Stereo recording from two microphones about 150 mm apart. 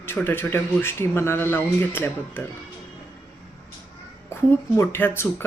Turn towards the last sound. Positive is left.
turn(degrees=15)  # may be behind; listen again after turning